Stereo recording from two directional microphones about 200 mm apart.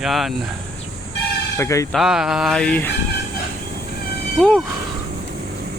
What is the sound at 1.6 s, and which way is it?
Speech, 15° left (ahead or behind).